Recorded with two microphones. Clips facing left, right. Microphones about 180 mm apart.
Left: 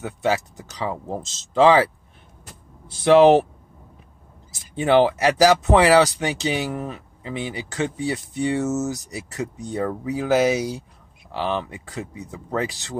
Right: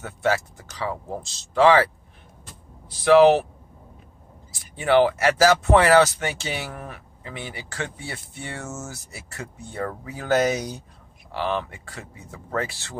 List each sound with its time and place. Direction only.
0.0 s speech: 15° left (ahead or behind)
2.9 s speech: 25° left (ahead or behind)
4.5 s speech: 20° left (ahead or behind)